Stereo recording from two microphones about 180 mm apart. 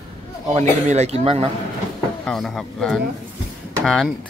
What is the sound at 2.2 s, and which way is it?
Speech, centre (ahead or behind).